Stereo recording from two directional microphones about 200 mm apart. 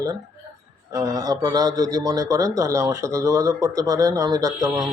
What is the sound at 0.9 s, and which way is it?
Speech, 20° right (ahead or behind).